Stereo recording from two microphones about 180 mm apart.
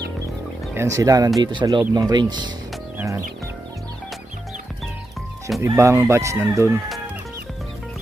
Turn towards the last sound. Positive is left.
turn(degrees=-15)  # may be behind; listen again after turning